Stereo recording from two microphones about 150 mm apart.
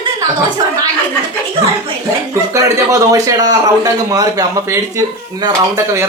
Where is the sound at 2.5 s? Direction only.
20° right (ahead or behind).